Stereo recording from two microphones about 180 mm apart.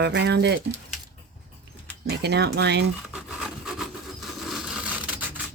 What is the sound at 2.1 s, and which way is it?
Speech, 65° right (ahead or behind).